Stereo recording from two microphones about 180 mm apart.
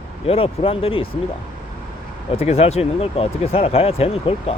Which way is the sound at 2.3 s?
35° left (ahead or behind).